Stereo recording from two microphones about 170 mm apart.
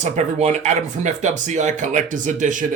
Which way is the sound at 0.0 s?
40° right (ahead or behind).